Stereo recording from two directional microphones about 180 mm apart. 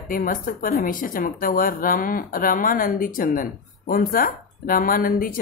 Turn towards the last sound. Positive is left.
turn(degrees=55)  # may be behind; listen again after turning